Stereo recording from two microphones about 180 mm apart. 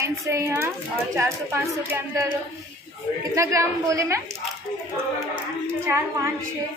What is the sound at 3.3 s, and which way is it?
Speech, 20° right (ahead or behind).